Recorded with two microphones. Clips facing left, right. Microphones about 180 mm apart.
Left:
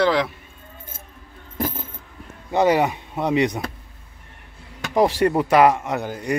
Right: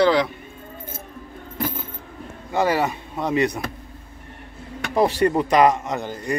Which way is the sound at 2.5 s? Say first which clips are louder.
Left 3 dB; 20° left (ahead or behind).